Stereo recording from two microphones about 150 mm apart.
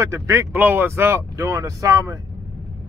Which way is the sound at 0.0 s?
20° right (ahead or behind).